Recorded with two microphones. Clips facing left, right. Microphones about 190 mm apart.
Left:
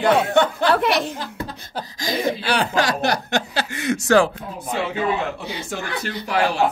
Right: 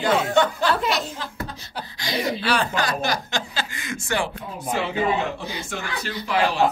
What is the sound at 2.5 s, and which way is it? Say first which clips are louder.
Speech: left 4 dB; 90° left.